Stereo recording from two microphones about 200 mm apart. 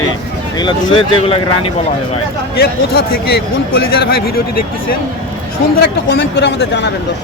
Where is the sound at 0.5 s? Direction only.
25° left (ahead or behind).